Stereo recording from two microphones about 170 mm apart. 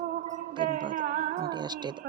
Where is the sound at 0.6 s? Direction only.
55° right (ahead or behind).